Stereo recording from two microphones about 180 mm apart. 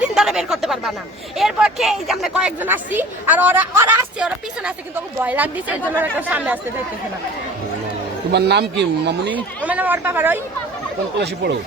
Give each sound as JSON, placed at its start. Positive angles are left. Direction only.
{"t": 0.0, "sound": "a sound", "side_deg": -5}
{"t": 1.4, "sound": "a woman's voice", "side_deg": -5}
{"t": 8.3, "sound": "a man's voice", "side_deg": -65}
{"t": 9.6, "sound": "a woman's voice", "side_deg": -10}